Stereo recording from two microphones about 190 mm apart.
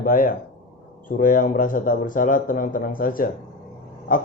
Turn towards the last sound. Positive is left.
turn(degrees=45)  # may be behind; listen again after turning